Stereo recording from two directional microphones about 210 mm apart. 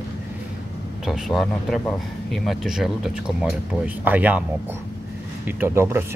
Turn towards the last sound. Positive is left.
turn(degrees=-10)  # may be behind; listen again after turning